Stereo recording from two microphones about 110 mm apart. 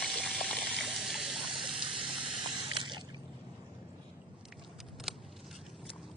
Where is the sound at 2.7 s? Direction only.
50° right (ahead or behind).